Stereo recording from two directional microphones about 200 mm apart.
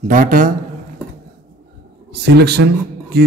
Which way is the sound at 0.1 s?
45° right (ahead or behind).